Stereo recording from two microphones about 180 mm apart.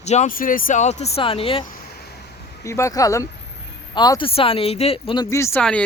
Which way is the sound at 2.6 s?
15° left (ahead or behind).